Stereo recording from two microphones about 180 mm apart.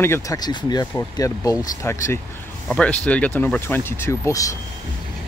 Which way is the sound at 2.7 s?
5° left (ahead or behind).